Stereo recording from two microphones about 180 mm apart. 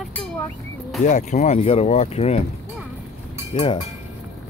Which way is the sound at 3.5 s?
30° left (ahead or behind).